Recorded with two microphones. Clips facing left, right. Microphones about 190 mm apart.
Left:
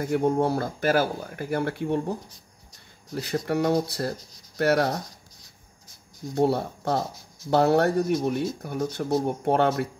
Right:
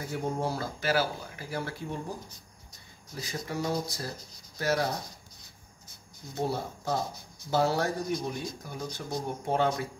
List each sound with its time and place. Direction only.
0.0 s speech: 60° left (ahead or behind)
3.2 s speech: 65° left (ahead or behind)
6.3 s speech: 65° left (ahead or behind)